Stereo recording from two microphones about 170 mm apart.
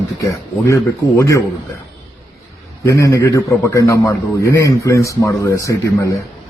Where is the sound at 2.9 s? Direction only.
20° left (ahead or behind).